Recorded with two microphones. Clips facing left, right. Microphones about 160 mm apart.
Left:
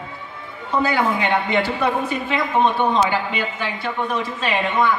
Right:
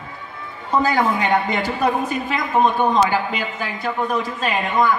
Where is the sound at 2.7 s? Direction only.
40° right (ahead or behind).